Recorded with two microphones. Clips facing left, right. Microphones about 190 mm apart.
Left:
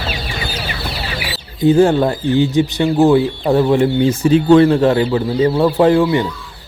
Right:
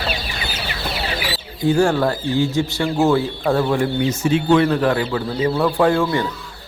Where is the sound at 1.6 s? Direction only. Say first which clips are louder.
Left 5 dB; 20° left (ahead or behind).